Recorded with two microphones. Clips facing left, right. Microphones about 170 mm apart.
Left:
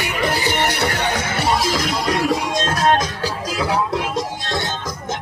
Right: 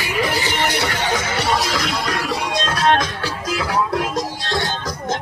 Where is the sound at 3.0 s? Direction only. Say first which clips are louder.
Left 1 dB; 35° left (ahead or behind).